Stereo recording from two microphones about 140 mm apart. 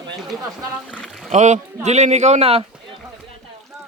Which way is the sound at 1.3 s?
55° right (ahead or behind).